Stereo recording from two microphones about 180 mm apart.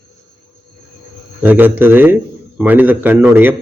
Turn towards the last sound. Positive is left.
turn(degrees=-10)  # may be behind; listen again after turning